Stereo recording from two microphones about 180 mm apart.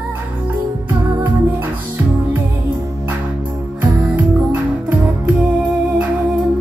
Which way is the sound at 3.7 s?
10° right (ahead or behind).